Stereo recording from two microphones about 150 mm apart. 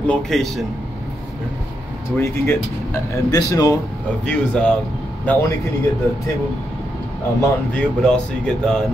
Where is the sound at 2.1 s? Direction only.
15° left (ahead or behind).